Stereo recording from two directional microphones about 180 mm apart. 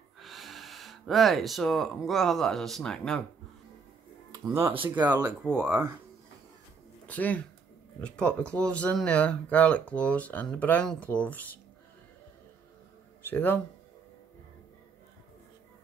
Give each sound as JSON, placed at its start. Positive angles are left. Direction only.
{"t": 0.2, "sound": "speech", "side_deg": 0}
{"t": 4.7, "sound": "speech", "side_deg": -25}
{"t": 5.4, "sound": "speech", "side_deg": -10}
{"t": 7.1, "sound": "speech", "side_deg": 10}
{"t": 13.2, "sound": "speech", "side_deg": 10}